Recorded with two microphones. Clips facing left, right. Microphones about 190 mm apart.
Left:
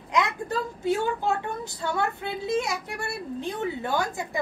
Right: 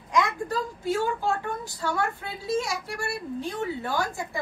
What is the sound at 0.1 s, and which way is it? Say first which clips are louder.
A woman's voice: even; 20° left (ahead or behind).